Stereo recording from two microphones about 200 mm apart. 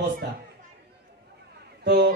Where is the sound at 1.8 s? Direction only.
55° right (ahead or behind).